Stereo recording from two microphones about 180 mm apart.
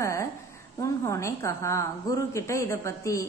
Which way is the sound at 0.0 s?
15° left (ahead or behind).